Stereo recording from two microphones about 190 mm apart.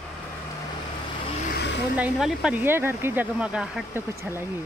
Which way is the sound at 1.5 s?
65° left (ahead or behind).